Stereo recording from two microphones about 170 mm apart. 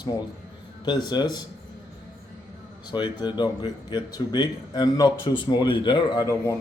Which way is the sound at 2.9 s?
25° left (ahead or behind).